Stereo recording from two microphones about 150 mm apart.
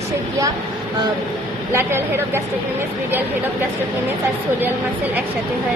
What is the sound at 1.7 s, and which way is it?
Speech, 15° right (ahead or behind).